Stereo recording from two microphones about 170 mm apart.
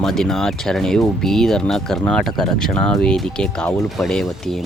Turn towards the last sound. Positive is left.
turn(degrees=0)  # may be behind; listen again after turning